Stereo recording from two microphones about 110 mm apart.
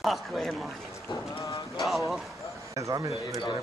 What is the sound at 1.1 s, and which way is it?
Boat, 45° left (ahead or behind).